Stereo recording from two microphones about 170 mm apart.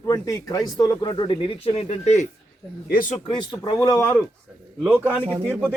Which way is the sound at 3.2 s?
25° left (ahead or behind).